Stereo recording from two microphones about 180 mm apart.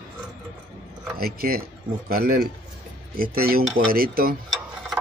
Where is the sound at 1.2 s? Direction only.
55° right (ahead or behind).